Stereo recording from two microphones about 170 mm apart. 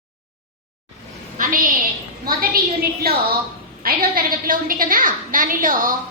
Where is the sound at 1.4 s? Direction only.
55° right (ahead or behind).